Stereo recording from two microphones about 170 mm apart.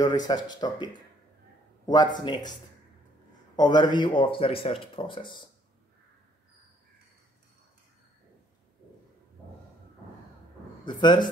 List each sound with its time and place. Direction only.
0.0 s speech: 25° left (ahead or behind)
2.1 s speech: 25° left (ahead or behind)
3.5 s speech: 25° left (ahead or behind)
10.9 s speech: 25° left (ahead or behind)